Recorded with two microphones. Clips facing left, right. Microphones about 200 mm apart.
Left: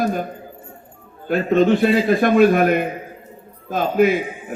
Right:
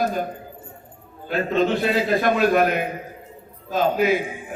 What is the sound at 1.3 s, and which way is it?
A man's voice, 50° left (ahead or behind).